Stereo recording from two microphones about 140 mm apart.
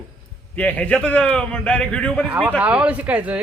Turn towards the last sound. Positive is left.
turn(degrees=-10)  # may be behind; listen again after turning